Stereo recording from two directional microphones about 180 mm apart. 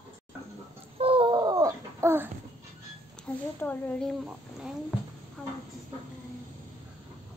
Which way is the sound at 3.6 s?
Centre (ahead or behind).